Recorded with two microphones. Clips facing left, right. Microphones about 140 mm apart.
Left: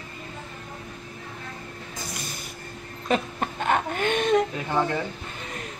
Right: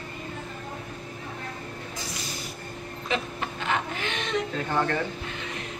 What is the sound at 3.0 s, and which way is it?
Speech, 45° left (ahead or behind).